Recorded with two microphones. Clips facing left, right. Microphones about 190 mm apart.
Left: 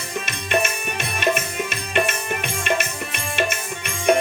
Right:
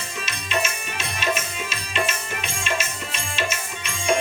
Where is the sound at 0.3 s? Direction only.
60° left (ahead or behind).